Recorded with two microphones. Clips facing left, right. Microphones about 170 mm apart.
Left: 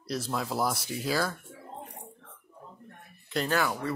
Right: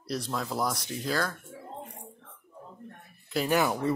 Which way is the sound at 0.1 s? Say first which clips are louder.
Even; 5° left (ahead or behind).